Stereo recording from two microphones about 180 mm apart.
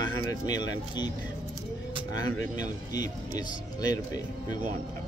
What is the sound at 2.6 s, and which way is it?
Speech, 20° left (ahead or behind).